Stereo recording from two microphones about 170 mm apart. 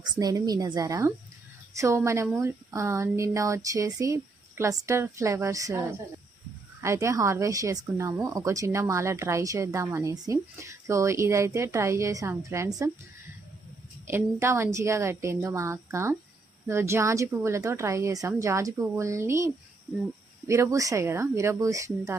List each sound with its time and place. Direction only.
0.0 s a woman's voice: 20° right (ahead or behind)
6.8 s a woman's voice: 15° right (ahead or behind)
14.1 s a woman's voice: 15° right (ahead or behind)
20.5 s a woman's voice: 20° right (ahead or behind)